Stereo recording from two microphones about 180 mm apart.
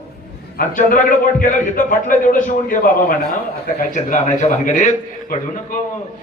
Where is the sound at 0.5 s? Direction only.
45° left (ahead or behind).